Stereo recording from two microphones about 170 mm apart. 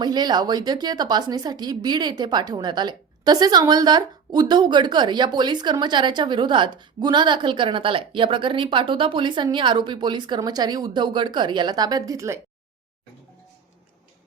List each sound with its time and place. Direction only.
0.0 s a woman's voice: 25° right (ahead or behind)